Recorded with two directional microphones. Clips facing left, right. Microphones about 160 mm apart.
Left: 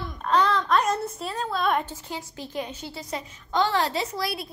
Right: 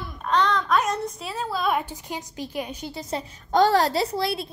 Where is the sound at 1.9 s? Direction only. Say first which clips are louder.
Right 2 dB; 15° right (ahead or behind).